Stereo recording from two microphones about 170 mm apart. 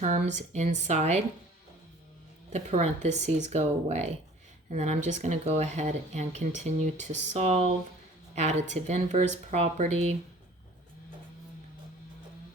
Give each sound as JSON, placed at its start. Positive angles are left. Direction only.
{"t": 0.0, "sound": "speech", "side_deg": -45}
{"t": 2.5, "sound": "speech", "side_deg": -45}